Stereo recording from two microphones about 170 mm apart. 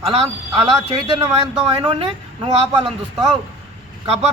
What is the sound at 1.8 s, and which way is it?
Speech, 30° right (ahead or behind).